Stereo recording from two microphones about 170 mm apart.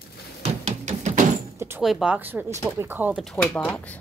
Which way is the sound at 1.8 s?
Centre (ahead or behind).